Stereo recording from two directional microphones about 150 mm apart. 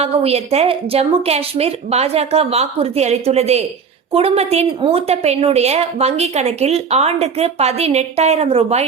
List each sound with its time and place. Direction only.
0.0 s a woman's voice: 45° right (ahead or behind)